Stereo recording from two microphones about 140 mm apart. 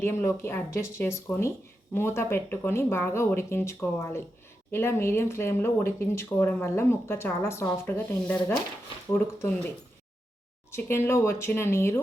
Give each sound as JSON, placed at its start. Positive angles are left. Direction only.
{"t": 0.0, "sound": "speech", "side_deg": 20}
{"t": 10.7, "sound": "speech", "side_deg": 15}